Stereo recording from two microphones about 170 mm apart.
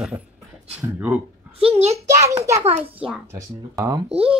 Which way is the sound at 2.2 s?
15° right (ahead or behind).